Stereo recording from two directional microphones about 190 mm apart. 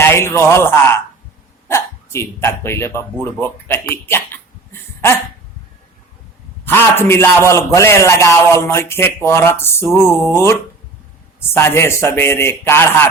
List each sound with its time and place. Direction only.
0.0 s a man's voice: 15° left (ahead or behind)
7.1 s a man's voice: 15° left (ahead or behind)